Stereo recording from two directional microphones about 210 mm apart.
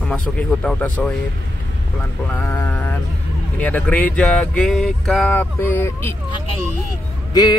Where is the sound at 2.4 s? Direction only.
10° left (ahead or behind).